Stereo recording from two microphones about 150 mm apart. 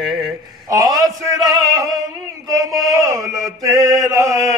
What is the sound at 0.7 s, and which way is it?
Mantra, 20° right (ahead or behind).